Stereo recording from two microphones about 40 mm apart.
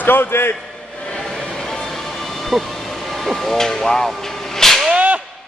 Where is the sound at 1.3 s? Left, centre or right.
Centre.